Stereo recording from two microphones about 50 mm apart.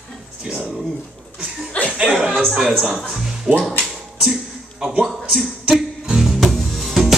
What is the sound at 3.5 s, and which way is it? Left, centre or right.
Speech, centre.